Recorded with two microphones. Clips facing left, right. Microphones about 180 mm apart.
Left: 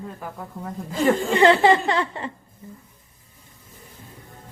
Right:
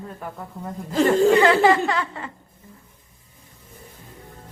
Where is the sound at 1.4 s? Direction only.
25° left (ahead or behind).